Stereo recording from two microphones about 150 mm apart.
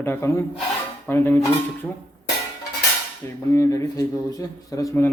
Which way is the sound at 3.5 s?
20° left (ahead or behind).